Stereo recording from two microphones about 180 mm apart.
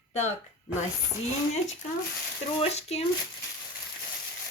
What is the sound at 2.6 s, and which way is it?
Speech, 35° left (ahead or behind).